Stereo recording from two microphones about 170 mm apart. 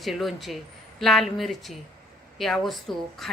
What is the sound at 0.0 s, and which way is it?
A woman's voice, centre (ahead or behind).